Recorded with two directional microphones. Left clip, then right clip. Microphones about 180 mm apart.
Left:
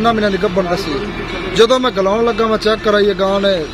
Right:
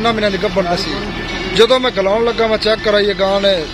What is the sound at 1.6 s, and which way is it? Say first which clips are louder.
Speech: even; 55° left (ahead or behind).